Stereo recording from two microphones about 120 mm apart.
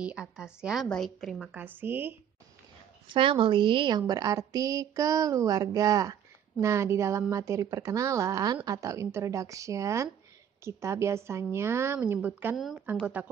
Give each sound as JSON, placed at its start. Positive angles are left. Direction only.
{"t": 0.0, "sound": "a woman's voice", "side_deg": -10}
{"t": 1.5, "sound": "a woman's voice", "side_deg": -15}
{"t": 3.1, "sound": "a woman's voice", "side_deg": -45}